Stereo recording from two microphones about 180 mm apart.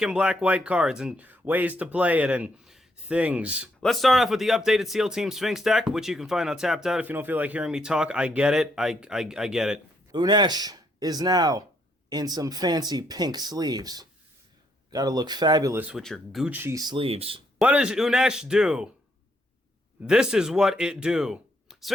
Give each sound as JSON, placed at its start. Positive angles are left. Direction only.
{"t": 0.0, "sound": "speech", "side_deg": -5}
{"t": 10.1, "sound": "speech", "side_deg": -25}
{"t": 17.6, "sound": "speech", "side_deg": -5}
{"t": 20.0, "sound": "speech", "side_deg": -5}